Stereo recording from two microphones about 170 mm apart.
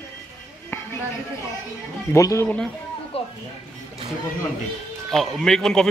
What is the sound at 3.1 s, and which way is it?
Music, 35° left (ahead or behind).